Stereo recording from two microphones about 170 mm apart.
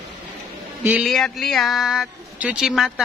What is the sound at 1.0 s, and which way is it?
Speech, centre (ahead or behind).